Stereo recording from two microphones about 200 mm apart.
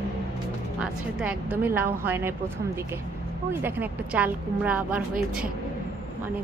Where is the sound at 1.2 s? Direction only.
5° right (ahead or behind).